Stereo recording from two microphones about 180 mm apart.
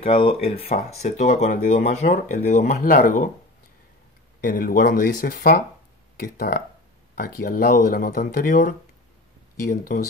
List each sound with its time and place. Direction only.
0.0 s speech: 30° left (ahead or behind); by 3.3 s 50° left (ahead or behind)
4.4 s speech: 50° left (ahead or behind)